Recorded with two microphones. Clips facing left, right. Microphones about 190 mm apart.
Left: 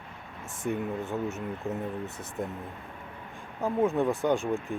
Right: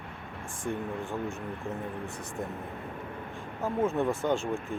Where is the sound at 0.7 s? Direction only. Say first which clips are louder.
Left 3 dB; 15° left (ahead or behind).